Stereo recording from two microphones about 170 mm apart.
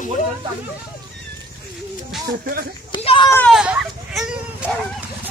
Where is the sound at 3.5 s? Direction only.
5° right (ahead or behind).